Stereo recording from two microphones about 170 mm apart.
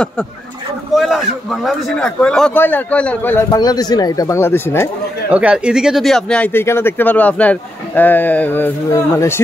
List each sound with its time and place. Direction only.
0.9 s a sound: centre (ahead or behind)
1.7 s speech: centre (ahead or behind)
3.4 s speech: 25° left (ahead or behind)
5.3 s speech: 5° right (ahead or behind); by 9.3 s 15° left (ahead or behind)